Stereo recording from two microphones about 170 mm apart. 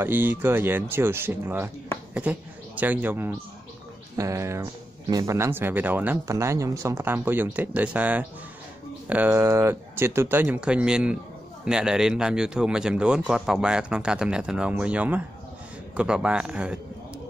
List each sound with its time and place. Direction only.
0.0 s speech: 10° right (ahead or behind)